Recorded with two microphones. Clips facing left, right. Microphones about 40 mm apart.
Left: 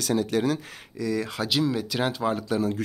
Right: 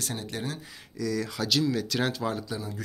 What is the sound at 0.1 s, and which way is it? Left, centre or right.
Speech, left.